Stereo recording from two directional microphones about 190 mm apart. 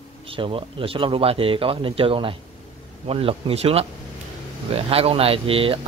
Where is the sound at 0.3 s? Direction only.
30° right (ahead or behind).